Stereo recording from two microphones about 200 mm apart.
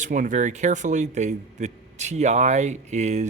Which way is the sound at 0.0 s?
40° right (ahead or behind).